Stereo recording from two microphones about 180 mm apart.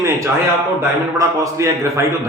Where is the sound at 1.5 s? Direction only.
15° right (ahead or behind).